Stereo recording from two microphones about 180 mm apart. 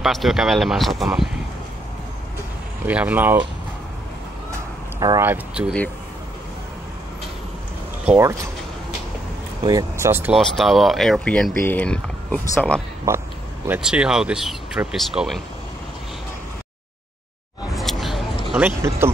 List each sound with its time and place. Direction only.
0.0 s speech: centre (ahead or behind)
2.9 s speech: 10° right (ahead or behind)
5.0 s speech: 15° right (ahead or behind)
8.0 s speech: 5° right (ahead or behind)
9.6 s speech: 20° right (ahead or behind)
10.3 s speech: centre (ahead or behind)
13.7 s speech: 5° right (ahead or behind)
17.7 s a sound: centre (ahead or behind)
18.8 s speech: 15° right (ahead or behind)